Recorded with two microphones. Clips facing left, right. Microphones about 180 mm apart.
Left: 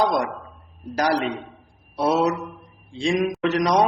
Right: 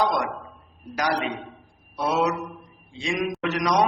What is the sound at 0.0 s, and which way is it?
A man's voice, 35° left (ahead or behind).